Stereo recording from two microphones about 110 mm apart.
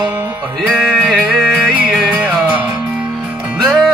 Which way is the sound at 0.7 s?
Centre (ahead or behind).